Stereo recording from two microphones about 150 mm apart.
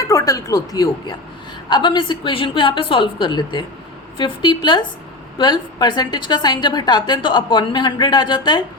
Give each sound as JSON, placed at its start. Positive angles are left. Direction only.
{"t": 0.0, "sound": "a woman's voice", "side_deg": 20}